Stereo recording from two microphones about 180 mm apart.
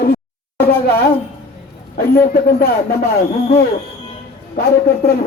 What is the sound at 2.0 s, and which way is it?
Speech, 55° left (ahead or behind).